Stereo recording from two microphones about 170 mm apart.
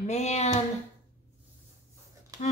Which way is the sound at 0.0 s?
40° left (ahead or behind).